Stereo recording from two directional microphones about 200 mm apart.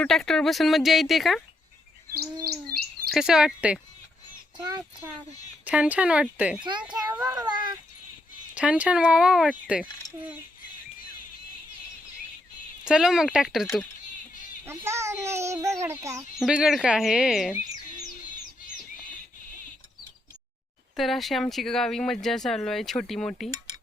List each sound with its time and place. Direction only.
0.0 s speech: centre (ahead or behind)
2.1 s speech: 50° right (ahead or behind)
3.1 s speech: 5° right (ahead or behind)
5.6 s speech: 5° right (ahead or behind)
6.7 s speech: 20° right (ahead or behind)
8.5 s speech: 5° right (ahead or behind)
12.8 s speech: 5° right (ahead or behind)
14.8 s speech: 15° right (ahead or behind)
16.4 s speech: 5° right (ahead or behind)
20.9 s speech: centre (ahead or behind)